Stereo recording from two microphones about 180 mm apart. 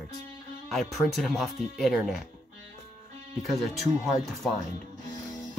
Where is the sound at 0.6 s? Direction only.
Centre (ahead or behind).